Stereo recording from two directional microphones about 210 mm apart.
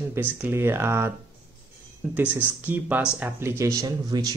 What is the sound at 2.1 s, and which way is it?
Speech, 5° right (ahead or behind).